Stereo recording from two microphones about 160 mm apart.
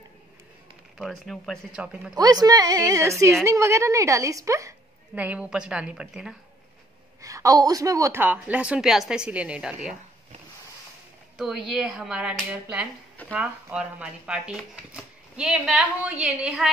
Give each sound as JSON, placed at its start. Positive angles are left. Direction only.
{"t": 0.9, "sound": "a woman's voice", "side_deg": 0}
{"t": 2.1, "sound": "a woman's voice", "side_deg": -25}
{"t": 7.2, "sound": "a woman's voice", "side_deg": -20}
{"t": 11.3, "sound": "speech", "side_deg": 0}